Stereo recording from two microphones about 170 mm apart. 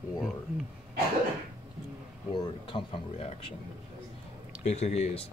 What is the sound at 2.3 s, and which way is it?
Speech, 30° left (ahead or behind).